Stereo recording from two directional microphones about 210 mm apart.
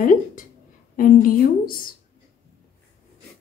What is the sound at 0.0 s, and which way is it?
A woman's voice, 40° left (ahead or behind).